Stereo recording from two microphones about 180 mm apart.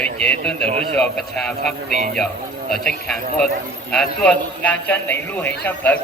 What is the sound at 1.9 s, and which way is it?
Speech, 45° right (ahead or behind).